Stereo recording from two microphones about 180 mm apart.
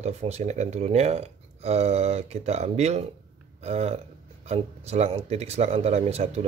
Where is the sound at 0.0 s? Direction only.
35° right (ahead or behind).